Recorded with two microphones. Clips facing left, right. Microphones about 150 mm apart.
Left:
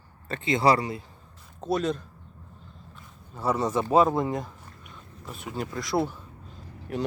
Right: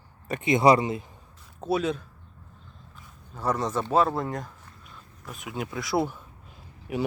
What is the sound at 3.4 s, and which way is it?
Speech, 10° left (ahead or behind).